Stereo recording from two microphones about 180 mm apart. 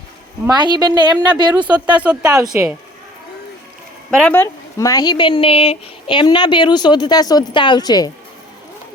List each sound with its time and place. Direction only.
0.4 s a woman's voice: 25° right (ahead or behind)
1.5 s speech: 10° right (ahead or behind)
4.2 s speech: 10° left (ahead or behind)
4.8 s a woman's voice: 20° left (ahead or behind)